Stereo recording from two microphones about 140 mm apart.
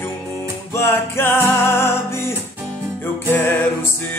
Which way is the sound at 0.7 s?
15° left (ahead or behind).